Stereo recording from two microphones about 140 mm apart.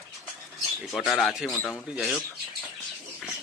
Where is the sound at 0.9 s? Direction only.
Centre (ahead or behind).